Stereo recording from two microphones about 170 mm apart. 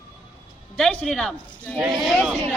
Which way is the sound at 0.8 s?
Centre (ahead or behind).